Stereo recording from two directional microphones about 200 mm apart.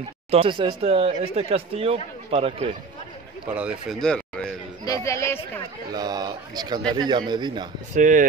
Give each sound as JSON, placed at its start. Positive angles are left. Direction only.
{"t": 0.3, "sound": "speech", "side_deg": -25}
{"t": 3.5, "sound": "speech", "side_deg": -5}
{"t": 4.8, "sound": "speech", "side_deg": 15}
{"t": 5.9, "sound": "speech", "side_deg": -20}
{"t": 7.9, "sound": "speech", "side_deg": -40}